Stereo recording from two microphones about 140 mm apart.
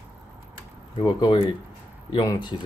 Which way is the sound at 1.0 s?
30° left (ahead or behind).